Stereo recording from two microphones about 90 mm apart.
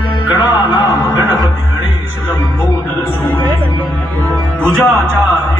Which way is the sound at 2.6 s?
20° left (ahead or behind).